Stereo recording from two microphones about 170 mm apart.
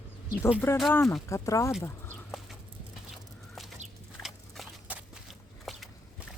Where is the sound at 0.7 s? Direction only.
15° left (ahead or behind).